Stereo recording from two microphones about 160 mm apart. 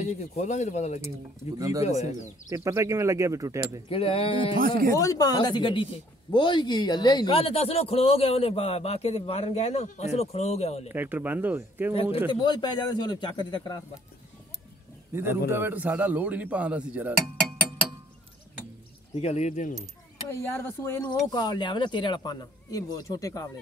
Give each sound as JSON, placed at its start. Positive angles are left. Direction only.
{"t": 0.0, "sound": "speech", "side_deg": 45}
{"t": 1.6, "sound": "speech", "side_deg": -20}
{"t": 2.0, "sound": "speech", "side_deg": 45}
{"t": 2.5, "sound": "speech", "side_deg": -20}
{"t": 3.9, "sound": "a man's voice", "side_deg": 35}
{"t": 4.6, "sound": "speech", "side_deg": -65}
{"t": 4.9, "sound": "speech", "side_deg": 20}
{"t": 7.3, "sound": "a man's voice", "side_deg": 35}
{"t": 10.9, "sound": "a man's voice", "side_deg": -10}
{"t": 11.9, "sound": "a man's voice", "side_deg": 35}
{"t": 15.1, "sound": "a man's voice", "side_deg": -15}
{"t": 19.1, "sound": "speech", "side_deg": 45}
{"t": 20.2, "sound": "speech", "side_deg": 15}
{"t": 21.1, "sound": "speech", "side_deg": 25}